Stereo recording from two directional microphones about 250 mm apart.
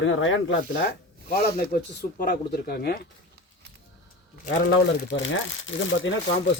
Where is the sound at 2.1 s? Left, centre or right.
Left.